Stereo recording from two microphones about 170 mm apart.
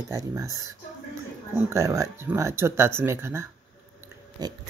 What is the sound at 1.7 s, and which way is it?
Speech, 15° right (ahead or behind).